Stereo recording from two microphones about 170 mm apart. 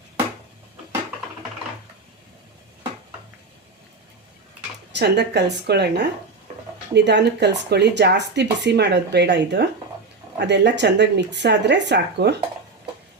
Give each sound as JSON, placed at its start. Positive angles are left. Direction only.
{"t": 4.9, "sound": "speech", "side_deg": -85}
{"t": 6.9, "sound": "speech", "side_deg": -90}